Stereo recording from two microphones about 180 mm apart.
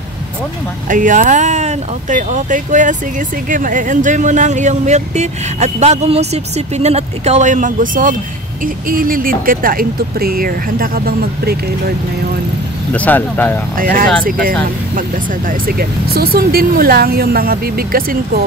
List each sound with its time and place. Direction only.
0.8 s speech: 45° right (ahead or behind)
12.9 s speech: 10° left (ahead or behind)
13.7 s speech: 50° right (ahead or behind)
15.6 s speech: 60° right (ahead or behind)